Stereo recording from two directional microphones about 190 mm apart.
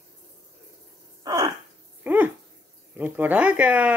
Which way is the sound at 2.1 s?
10° right (ahead or behind).